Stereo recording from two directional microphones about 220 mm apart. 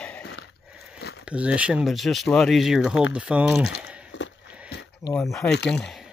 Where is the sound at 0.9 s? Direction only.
45° left (ahead or behind).